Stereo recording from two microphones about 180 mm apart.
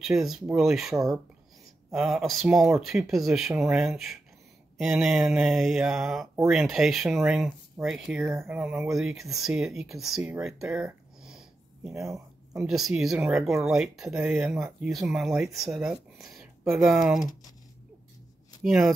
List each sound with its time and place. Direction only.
0.0 s speech: centre (ahead or behind)
2.0 s speech: centre (ahead or behind)
10.3 s a sound: 5° right (ahead or behind)
11.9 s speech: 15° right (ahead or behind)
12.6 s speech: centre (ahead or behind)
18.6 s speech: 5° right (ahead or behind)